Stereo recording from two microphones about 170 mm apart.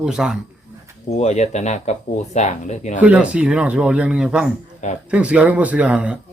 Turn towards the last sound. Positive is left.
turn(degrees=-5)  # may be behind; listen again after turning